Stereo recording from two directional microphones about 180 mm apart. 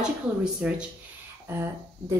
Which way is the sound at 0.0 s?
5° right (ahead or behind).